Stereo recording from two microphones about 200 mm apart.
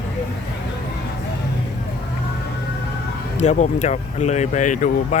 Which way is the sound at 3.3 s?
35° left (ahead or behind).